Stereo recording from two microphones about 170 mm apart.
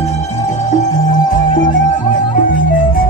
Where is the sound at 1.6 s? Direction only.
50° left (ahead or behind).